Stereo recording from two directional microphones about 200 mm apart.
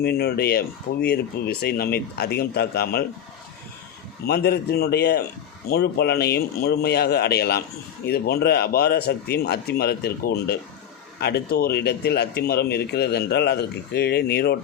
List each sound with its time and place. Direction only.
0.0 s a man's voice: 50° left (ahead or behind)
4.3 s a man's voice: 55° left (ahead or behind)